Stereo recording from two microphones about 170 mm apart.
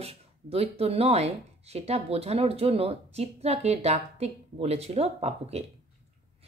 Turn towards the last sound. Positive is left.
turn(degrees=-35)  # may be behind; listen again after turning